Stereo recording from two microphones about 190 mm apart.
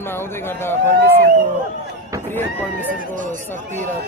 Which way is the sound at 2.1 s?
15° right (ahead or behind).